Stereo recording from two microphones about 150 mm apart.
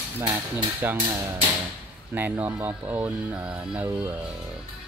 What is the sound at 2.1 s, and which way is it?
Speech, 10° right (ahead or behind).